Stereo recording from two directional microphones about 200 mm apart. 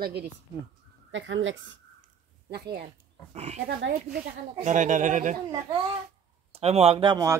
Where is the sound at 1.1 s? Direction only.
70° right (ahead or behind).